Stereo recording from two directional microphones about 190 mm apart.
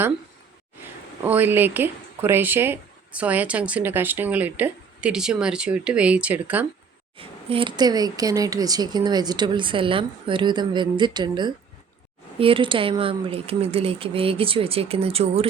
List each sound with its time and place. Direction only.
1.2 s speech: 10° right (ahead or behind)
7.2 s speech: 30° right (ahead or behind)